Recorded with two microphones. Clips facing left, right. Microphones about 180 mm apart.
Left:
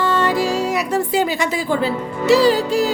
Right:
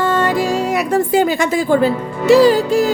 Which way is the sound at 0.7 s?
50° right (ahead or behind).